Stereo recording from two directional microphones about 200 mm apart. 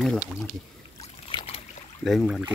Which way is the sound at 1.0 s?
30° left (ahead or behind).